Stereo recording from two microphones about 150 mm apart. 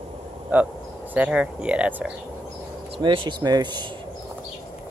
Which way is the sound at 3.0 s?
35° right (ahead or behind).